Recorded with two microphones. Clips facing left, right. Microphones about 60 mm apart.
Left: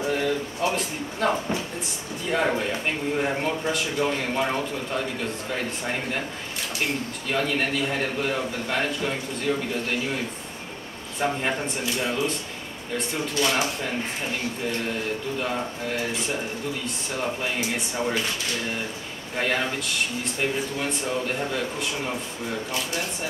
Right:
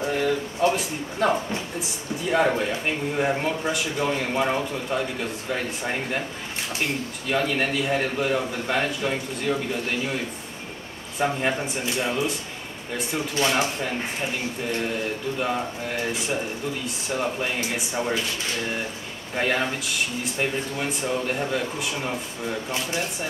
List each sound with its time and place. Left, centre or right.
0.0 s a sound: centre
1.8 s a man's voice: centre
7.2 s a man's voice: centre
11.1 s a man's voice: centre
13.3 s speech: right
15.3 s a man's voice: centre
19.3 s a man's voice: centre